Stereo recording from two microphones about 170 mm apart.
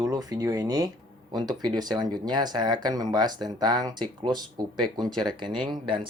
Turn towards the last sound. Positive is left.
turn(degrees=-30)  # may be behind; listen again after turning